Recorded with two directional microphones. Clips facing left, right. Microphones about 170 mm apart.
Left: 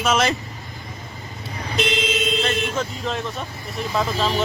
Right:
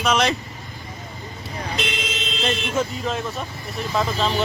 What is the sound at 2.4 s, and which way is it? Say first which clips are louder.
A man's voice: even; 10° right (ahead or behind).